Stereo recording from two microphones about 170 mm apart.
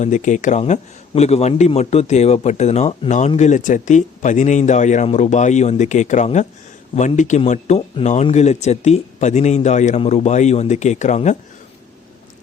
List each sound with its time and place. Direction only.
0.0 s a man's voice: 45° left (ahead or behind)